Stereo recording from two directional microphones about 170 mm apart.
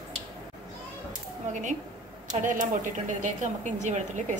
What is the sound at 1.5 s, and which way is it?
A woman's voice, 45° right (ahead or behind).